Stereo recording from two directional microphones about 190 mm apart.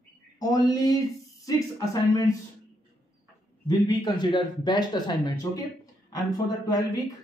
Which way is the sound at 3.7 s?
25° left (ahead or behind).